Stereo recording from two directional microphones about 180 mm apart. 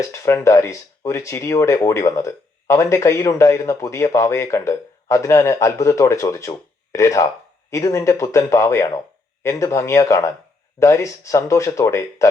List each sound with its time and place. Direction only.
0.1 s speech: 15° left (ahead or behind)